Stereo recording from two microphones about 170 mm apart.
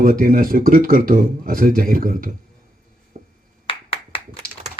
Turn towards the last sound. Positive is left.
turn(degrees=30)  # may be behind; listen again after turning